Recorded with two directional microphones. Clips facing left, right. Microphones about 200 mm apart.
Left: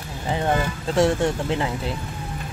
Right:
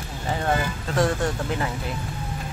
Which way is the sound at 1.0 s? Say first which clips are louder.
Left 3 dB; 25° left (ahead or behind).